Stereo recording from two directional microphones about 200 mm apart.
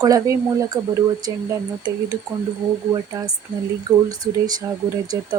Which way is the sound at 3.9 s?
20° right (ahead or behind).